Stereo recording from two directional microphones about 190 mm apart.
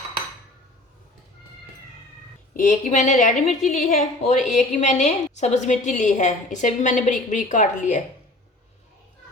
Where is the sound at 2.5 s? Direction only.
45° left (ahead or behind).